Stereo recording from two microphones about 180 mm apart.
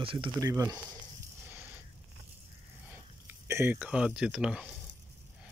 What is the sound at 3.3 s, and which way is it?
Speech, 15° right (ahead or behind).